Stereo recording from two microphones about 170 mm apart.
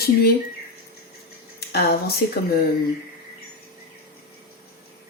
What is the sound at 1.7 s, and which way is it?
Speech, 65° left (ahead or behind).